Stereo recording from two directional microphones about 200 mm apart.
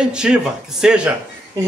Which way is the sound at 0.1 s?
5° right (ahead or behind).